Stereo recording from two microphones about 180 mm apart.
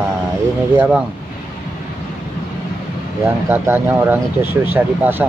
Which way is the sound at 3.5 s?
10° right (ahead or behind).